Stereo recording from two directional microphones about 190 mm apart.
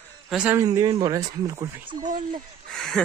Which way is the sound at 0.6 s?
20° right (ahead or behind).